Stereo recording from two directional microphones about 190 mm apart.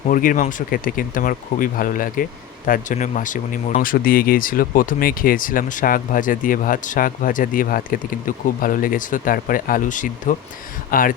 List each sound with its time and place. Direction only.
0.1 s speech: 45° left (ahead or behind)